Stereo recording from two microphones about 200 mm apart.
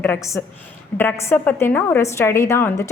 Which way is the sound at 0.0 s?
15° left (ahead or behind).